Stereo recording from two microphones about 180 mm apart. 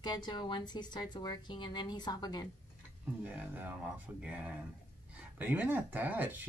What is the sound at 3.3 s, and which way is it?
Speech, 10° right (ahead or behind).